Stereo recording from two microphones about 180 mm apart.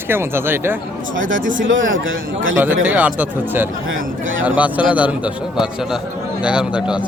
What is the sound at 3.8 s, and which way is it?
Speech, 90° right.